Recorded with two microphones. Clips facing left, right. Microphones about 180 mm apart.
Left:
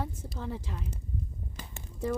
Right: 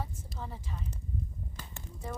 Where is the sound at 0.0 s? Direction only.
75° left (ahead or behind).